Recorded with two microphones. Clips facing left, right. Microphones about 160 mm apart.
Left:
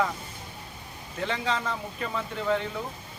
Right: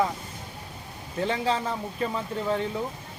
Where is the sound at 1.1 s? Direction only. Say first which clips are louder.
Right 3 dB; 35° right (ahead or behind).